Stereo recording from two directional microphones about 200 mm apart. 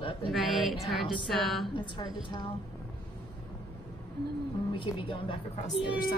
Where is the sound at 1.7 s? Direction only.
25° left (ahead or behind).